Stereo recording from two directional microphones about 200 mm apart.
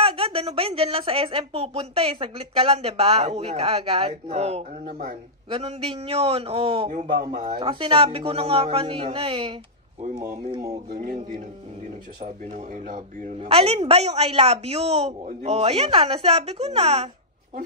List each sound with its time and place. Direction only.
0.0 s a woman's voice: 30° right (ahead or behind)
6.9 s a woman's voice: 40° right (ahead or behind)
7.5 s a woman's voice: 25° right (ahead or behind)
10.9 s a woman's voice: 45° right (ahead or behind)